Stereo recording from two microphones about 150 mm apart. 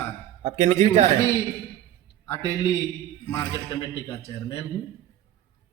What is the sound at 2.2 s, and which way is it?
A man's voice, 15° left (ahead or behind).